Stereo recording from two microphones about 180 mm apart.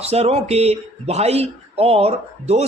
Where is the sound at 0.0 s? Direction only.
35° right (ahead or behind).